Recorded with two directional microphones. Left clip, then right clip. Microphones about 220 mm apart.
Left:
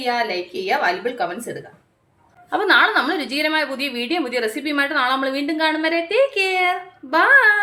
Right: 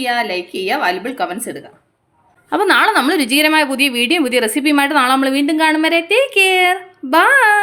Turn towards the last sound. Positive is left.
turn(degrees=-45)  # may be behind; listen again after turning